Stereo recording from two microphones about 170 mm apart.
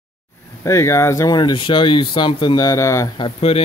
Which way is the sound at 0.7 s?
15° left (ahead or behind).